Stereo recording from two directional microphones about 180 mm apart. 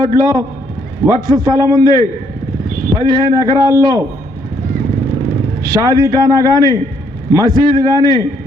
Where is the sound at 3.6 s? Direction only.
20° right (ahead or behind).